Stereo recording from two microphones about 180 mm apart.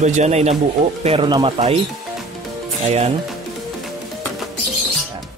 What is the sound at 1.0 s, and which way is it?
Speech, 25° right (ahead or behind).